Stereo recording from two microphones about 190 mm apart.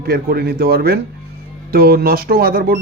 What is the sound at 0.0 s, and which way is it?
A man's voice, 55° right (ahead or behind).